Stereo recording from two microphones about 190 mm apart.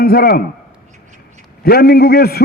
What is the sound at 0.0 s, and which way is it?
Speech, 55° left (ahead or behind).